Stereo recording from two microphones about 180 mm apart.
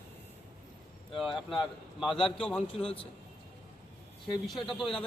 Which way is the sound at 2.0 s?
Centre (ahead or behind).